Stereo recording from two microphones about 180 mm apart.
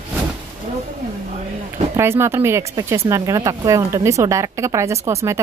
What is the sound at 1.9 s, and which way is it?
A woman's voice, 15° right (ahead or behind).